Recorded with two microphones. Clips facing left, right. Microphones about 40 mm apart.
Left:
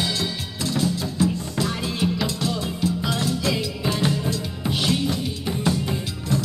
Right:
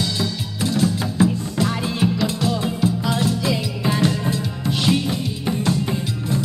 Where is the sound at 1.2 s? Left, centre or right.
Right.